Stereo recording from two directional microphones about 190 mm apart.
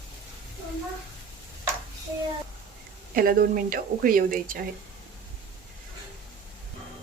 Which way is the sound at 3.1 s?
50° right (ahead or behind).